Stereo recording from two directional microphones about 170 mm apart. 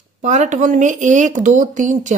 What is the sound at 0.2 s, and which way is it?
Speech, 45° right (ahead or behind).